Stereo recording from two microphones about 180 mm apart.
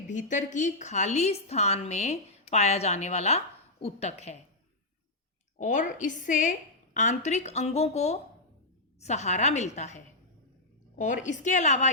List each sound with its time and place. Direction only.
0.1 s a woman's voice: 45° left (ahead or behind)
5.5 s a woman's voice: 45° left (ahead or behind)